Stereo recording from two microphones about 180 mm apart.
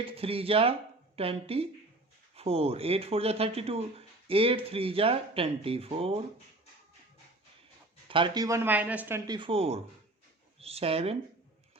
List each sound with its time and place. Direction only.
0.0 s speech: 30° right (ahead or behind)
8.0 s speech: 30° right (ahead or behind)